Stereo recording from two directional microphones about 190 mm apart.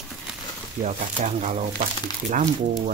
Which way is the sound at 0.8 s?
35° right (ahead or behind).